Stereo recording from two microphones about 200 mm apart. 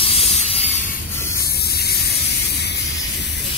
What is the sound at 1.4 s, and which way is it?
Spray, 55° left (ahead or behind).